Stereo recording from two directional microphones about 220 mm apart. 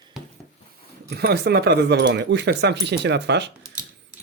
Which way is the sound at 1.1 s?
45° right (ahead or behind).